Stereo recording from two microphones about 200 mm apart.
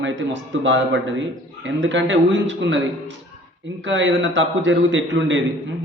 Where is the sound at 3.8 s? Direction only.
65° right (ahead or behind).